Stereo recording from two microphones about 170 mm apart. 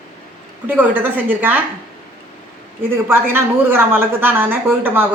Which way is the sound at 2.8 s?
10° right (ahead or behind).